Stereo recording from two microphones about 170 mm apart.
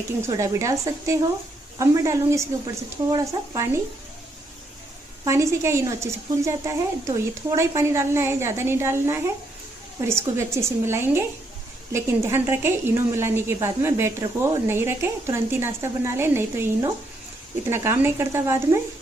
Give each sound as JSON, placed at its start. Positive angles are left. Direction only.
{"t": 0.3, "sound": "a woman's voice", "side_deg": -15}
{"t": 5.2, "sound": "a woman's voice", "side_deg": -15}